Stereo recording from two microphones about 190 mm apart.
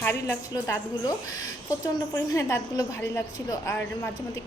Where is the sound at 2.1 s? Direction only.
15° left (ahead or behind).